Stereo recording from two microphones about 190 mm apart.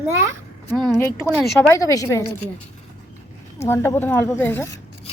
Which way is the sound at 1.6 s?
15° left (ahead or behind).